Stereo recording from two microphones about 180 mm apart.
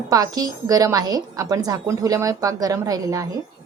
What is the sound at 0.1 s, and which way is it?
A woman's voice, 20° right (ahead or behind).